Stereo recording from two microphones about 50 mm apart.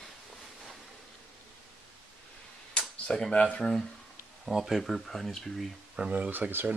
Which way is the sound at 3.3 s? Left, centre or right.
Left.